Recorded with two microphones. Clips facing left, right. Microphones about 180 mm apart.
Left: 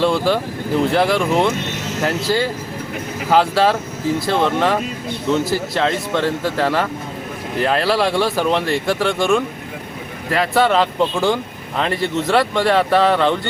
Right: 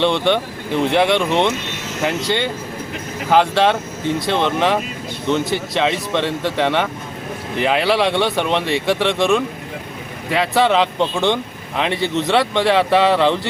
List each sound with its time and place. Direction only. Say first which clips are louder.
0.0 s speech: even; 5° left (ahead or behind)